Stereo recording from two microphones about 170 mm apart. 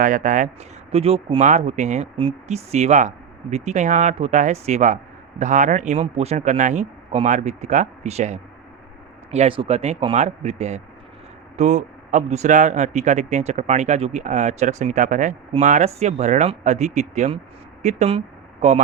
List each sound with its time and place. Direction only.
0.0 s speech: 50° right (ahead or behind)
0.9 s speech: 35° right (ahead or behind)